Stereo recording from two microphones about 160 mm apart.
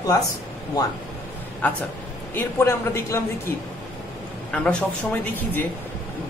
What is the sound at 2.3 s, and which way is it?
Speech, 15° left (ahead or behind).